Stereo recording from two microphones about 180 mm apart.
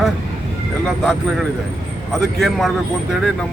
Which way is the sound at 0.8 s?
Centre (ahead or behind).